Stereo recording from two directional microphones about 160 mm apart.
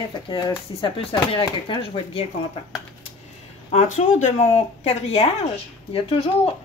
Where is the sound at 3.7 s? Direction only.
45° left (ahead or behind).